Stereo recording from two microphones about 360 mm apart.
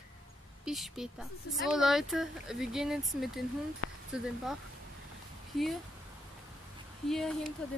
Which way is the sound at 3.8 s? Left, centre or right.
Left.